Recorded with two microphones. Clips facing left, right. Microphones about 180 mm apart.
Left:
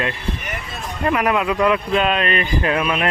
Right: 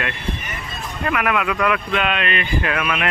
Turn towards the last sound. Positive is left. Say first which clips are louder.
# left 3 dB
turn(degrees=35)  # may be behind; listen again after turning